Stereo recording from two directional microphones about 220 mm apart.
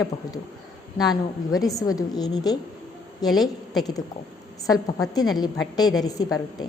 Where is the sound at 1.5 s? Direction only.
15° left (ahead or behind).